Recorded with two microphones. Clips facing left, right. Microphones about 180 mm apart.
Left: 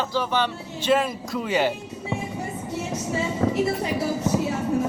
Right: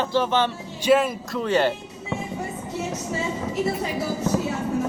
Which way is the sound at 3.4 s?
55° left (ahead or behind).